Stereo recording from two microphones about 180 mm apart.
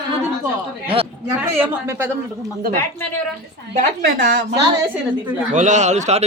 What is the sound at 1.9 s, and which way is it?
Speech, 10° right (ahead or behind).